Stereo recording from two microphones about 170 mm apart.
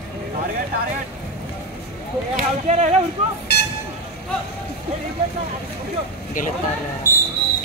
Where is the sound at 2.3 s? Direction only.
45° right (ahead or behind).